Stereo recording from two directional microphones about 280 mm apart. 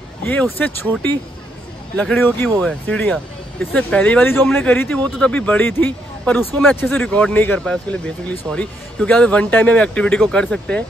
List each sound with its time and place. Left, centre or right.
0.2 s speech: centre